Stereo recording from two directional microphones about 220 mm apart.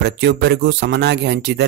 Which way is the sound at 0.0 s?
50° right (ahead or behind).